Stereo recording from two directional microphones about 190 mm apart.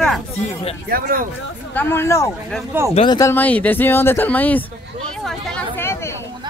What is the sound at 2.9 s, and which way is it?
Speech, 30° left (ahead or behind).